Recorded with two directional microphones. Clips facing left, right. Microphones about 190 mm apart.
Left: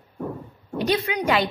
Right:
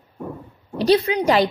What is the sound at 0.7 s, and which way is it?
Child singing, 35° right (ahead or behind).